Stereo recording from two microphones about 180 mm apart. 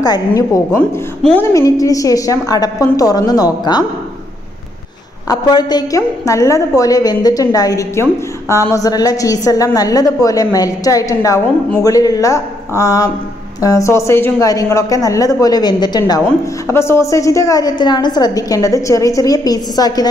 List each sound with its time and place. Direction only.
1.2 s a woman's voice: 10° left (ahead or behind)
5.3 s a woman's voice: 20° left (ahead or behind)